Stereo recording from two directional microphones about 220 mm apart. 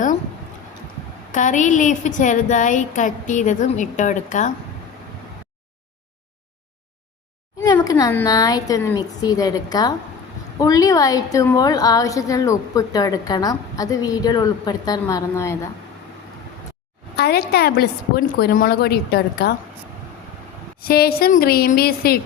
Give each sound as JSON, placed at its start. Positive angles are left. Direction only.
{"t": 1.3, "sound": "a woman's voice", "side_deg": 35}
{"t": 7.6, "sound": "a woman's voice", "side_deg": 15}
{"t": 17.2, "sound": "a woman's voice", "side_deg": 45}
{"t": 20.7, "sound": "a woman's voice", "side_deg": 45}